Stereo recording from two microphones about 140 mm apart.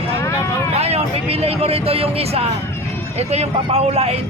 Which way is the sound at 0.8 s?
45° right (ahead or behind).